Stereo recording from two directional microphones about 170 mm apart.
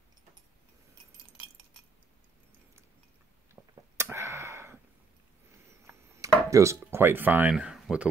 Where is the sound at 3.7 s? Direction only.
15° right (ahead or behind).